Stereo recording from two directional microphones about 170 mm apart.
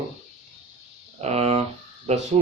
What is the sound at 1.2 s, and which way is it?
A man's voice, 40° right (ahead or behind).